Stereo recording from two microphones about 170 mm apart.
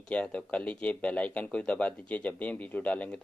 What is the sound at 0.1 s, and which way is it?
Speech, 5° left (ahead or behind).